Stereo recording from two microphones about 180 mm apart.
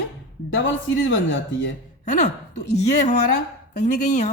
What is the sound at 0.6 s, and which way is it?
Speech, 90° left.